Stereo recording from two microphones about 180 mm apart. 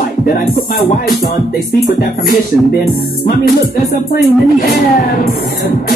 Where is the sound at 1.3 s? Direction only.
60° left (ahead or behind).